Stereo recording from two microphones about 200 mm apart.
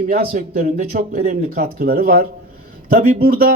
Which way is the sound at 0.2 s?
30° right (ahead or behind).